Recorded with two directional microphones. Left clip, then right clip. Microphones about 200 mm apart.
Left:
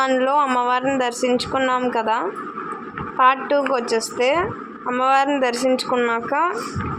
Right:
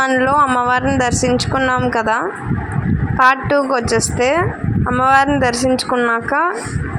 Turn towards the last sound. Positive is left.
turn(degrees=-25)  # may be behind; listen again after turning